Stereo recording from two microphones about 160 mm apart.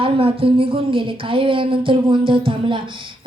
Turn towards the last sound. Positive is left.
turn(degrees=-30)  # may be behind; listen again after turning